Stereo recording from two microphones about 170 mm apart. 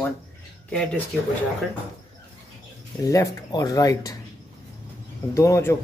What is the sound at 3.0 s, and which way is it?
Speech, 20° left (ahead or behind).